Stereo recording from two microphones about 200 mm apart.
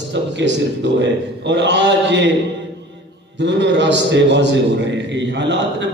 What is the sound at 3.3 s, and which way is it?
A man's voice, 60° right (ahead or behind).